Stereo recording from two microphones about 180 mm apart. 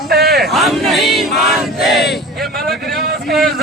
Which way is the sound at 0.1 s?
60° right (ahead or behind).